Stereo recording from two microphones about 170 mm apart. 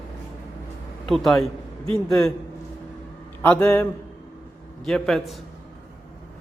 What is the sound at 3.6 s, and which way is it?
Speech, 20° left (ahead or behind).